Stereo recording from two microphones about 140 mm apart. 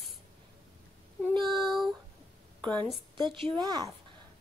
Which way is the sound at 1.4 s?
Centre (ahead or behind).